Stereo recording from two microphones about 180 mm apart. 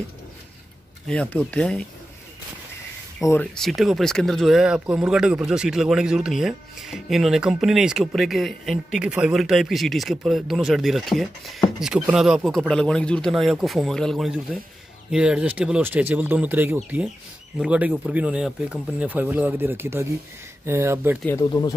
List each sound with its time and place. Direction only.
1.0 s speech: 5° left (ahead or behind)
3.3 s speech: 5° left (ahead or behind); by 21.2 s 15° right (ahead or behind)
21.4 s speech: 20° left (ahead or behind)